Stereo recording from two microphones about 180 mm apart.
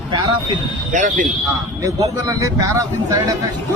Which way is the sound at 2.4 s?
20° right (ahead or behind).